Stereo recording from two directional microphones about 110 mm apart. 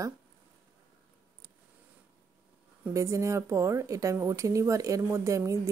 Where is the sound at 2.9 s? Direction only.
25° right (ahead or behind).